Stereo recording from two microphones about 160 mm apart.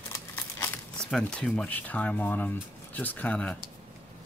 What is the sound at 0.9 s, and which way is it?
Speech, 5° left (ahead or behind).